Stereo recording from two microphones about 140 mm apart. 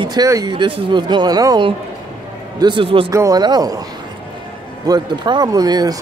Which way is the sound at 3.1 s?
25° right (ahead or behind).